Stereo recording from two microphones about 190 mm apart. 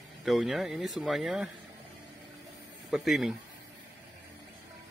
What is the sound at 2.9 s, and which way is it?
Speech, centre (ahead or behind).